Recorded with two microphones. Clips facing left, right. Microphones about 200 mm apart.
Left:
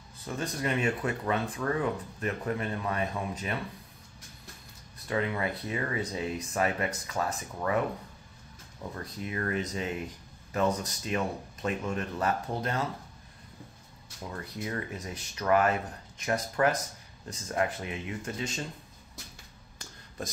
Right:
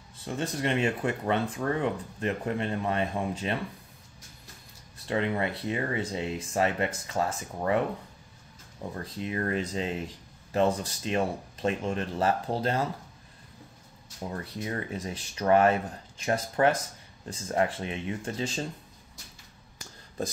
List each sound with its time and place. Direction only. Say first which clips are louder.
0.3 s speech: right 2 dB; 25° right (ahead or behind)
5.0 s speech: right 2 dB; 25° right (ahead or behind)
9.2 s speech: right 2 dB; 30° right (ahead or behind)
14.4 s speech: left 1 dB; 30° right (ahead or behind)